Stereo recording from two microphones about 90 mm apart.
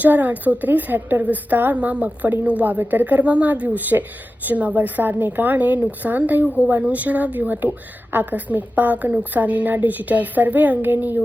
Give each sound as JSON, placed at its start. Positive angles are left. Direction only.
{"t": 0.0, "sound": "a woman's voice", "side_deg": -20}